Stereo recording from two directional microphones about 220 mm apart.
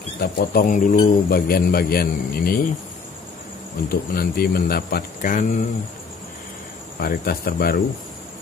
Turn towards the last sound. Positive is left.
turn(degrees=45)  # may be behind; listen again after turning